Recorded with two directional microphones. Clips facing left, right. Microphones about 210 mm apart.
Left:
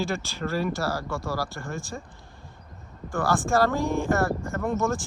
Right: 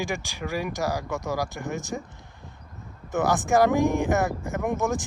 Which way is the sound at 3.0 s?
20° right (ahead or behind).